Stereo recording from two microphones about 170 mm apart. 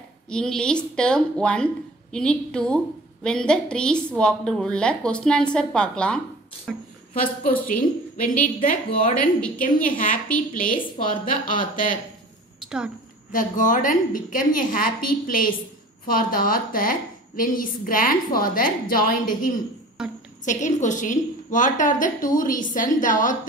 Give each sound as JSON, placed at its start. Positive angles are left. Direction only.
{"t": 0.3, "sound": "a woman's voice", "side_deg": 5}
{"t": 7.6, "sound": "a woman's voice", "side_deg": 55}
{"t": 12.5, "sound": "a sound", "side_deg": -5}
{"t": 13.3, "sound": "a woman's voice", "side_deg": 50}
{"t": 20.0, "sound": "a woman's voice", "side_deg": -5}
{"t": 20.4, "sound": "a woman's voice", "side_deg": 45}